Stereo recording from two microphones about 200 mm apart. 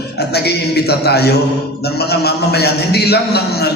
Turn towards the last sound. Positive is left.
turn(degrees=55)  # may be behind; listen again after turning